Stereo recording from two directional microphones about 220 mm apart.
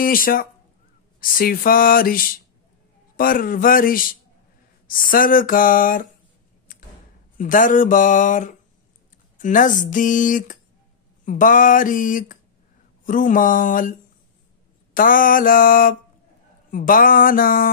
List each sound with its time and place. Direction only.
0.0 s speech: 40° left (ahead or behind)
7.3 s speech: 35° left (ahead or behind)
15.0 s speech: 40° left (ahead or behind)